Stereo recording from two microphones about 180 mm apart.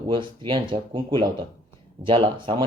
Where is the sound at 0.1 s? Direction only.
25° right (ahead or behind).